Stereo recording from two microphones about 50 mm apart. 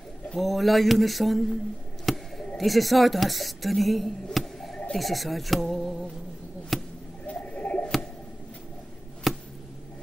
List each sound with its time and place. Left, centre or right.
0.4 s a sound: centre
2.5 s speech: centre
4.9 s a sound: centre
6.7 s basketball bounce: centre
7.2 s bird: left
9.3 s chop: centre